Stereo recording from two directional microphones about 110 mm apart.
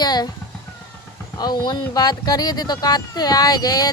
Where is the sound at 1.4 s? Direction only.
40° left (ahead or behind).